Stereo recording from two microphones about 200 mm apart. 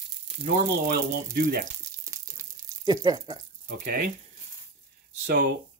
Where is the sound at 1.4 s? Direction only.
45° right (ahead or behind).